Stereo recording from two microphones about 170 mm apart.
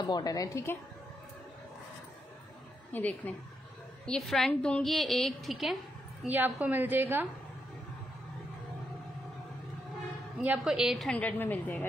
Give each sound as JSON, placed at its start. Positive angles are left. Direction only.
{"t": 0.0, "sound": "a woman's voice", "side_deg": 25}
{"t": 2.9, "sound": "a woman's voice", "side_deg": 10}
{"t": 10.4, "sound": "a woman's voice", "side_deg": -5}